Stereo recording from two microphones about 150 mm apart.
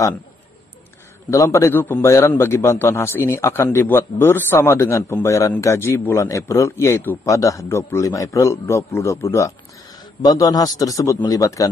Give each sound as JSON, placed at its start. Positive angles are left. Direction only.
{"t": 1.3, "sound": "a man's voice", "side_deg": 20}